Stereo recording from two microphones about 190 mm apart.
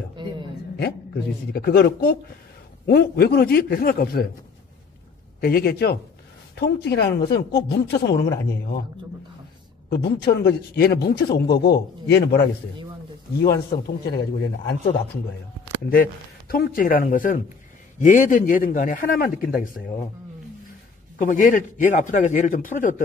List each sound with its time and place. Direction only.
0.1 s a sound: 25° right (ahead or behind)
1.5 s speech: 55° left (ahead or behind)
5.4 s speech: 50° left (ahead or behind)
9.8 s speech: 55° left (ahead or behind)
15.8 s speech: 50° left (ahead or behind)
21.2 s speech: 45° left (ahead or behind)